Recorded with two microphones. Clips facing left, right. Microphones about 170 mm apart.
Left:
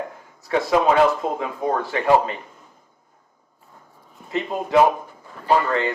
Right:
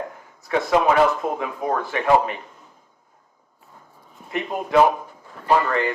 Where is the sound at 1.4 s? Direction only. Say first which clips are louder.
Left 1 dB; 30° left (ahead or behind).